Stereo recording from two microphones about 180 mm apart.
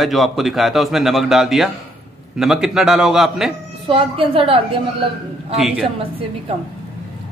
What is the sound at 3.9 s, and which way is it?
Speech, 30° right (ahead or behind).